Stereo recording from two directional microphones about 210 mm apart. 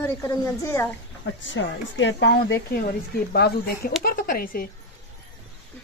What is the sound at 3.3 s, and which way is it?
Speech, 45° left (ahead or behind).